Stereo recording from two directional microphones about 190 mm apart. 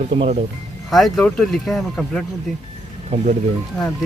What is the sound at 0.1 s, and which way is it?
Speech, 30° right (ahead or behind).